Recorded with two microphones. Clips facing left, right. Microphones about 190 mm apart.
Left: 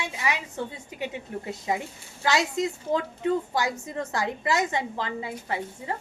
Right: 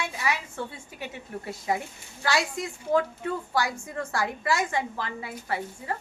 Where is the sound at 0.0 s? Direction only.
20° left (ahead or behind).